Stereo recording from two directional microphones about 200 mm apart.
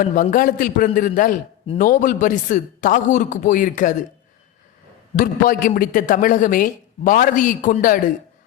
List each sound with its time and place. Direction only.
0.0 s a woman's voice: 40° left (ahead or behind)
5.1 s a woman's voice: 45° left (ahead or behind)